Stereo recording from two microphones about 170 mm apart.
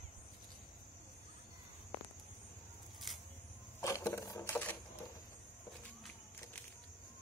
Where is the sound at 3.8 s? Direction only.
20° left (ahead or behind).